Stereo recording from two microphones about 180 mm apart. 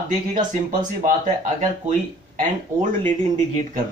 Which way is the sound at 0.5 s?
45° right (ahead or behind).